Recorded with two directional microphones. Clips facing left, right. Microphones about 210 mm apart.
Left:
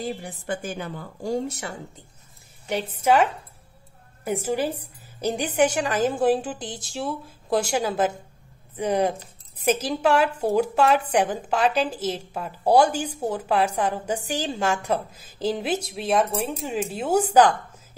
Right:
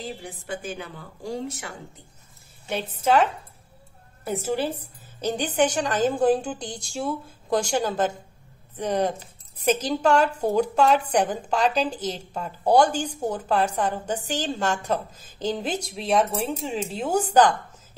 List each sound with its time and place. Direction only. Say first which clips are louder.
0.5 s a woman's voice: left 3 dB; 50° left (ahead or behind)
2.7 s a woman's voice: left 1 dB; 10° left (ahead or behind)